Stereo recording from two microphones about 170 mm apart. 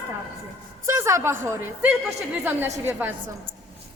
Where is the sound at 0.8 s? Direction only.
15° right (ahead or behind).